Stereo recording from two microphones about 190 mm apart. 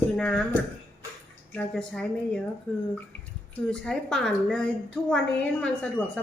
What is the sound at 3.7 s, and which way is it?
A woman's voice, 5° left (ahead or behind).